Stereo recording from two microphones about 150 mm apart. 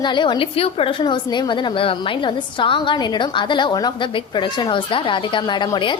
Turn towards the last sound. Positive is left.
turn(degrees=30)  # may be behind; listen again after turning